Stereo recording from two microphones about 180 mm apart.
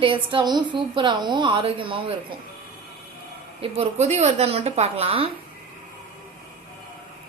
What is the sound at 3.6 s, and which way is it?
A woman's voice, 35° right (ahead or behind).